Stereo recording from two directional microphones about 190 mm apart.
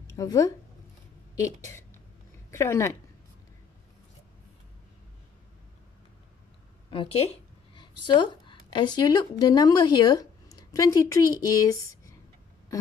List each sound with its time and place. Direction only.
0.0 s a sound: 15° left (ahead or behind)
2.5 s speech: 15° left (ahead or behind)
6.9 s a woman's voice: 30° left (ahead or behind)